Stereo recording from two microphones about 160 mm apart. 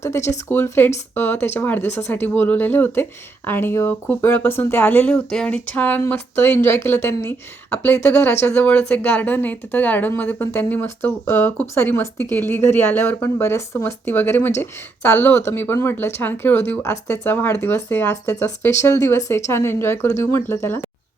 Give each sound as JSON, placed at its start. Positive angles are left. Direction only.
{"t": 0.0, "sound": "a woman's voice", "side_deg": 15}